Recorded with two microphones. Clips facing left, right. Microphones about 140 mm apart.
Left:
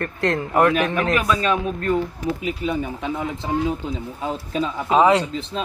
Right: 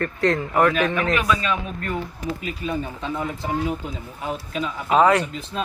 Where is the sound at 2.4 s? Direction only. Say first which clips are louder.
Left 2 dB; 20° left (ahead or behind).